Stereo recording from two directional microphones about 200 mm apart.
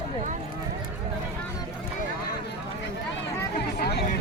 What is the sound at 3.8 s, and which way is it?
Speech, 55° left (ahead or behind).